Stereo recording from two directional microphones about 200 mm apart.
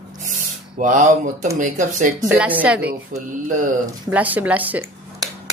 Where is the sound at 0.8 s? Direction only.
40° right (ahead or behind).